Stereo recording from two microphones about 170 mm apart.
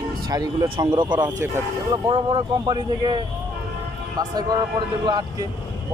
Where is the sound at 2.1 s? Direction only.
25° right (ahead or behind).